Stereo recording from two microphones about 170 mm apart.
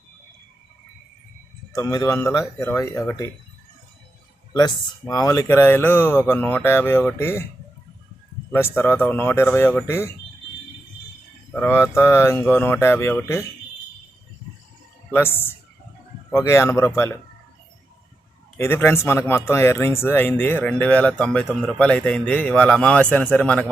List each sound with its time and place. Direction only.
1.7 s speech: 20° left (ahead or behind)
4.5 s speech: 20° left (ahead or behind)
8.5 s speech: 15° left (ahead or behind)
11.5 s speech: 10° left (ahead or behind)
15.1 s speech: 15° left (ahead or behind)
18.5 s speech: 15° left (ahead or behind)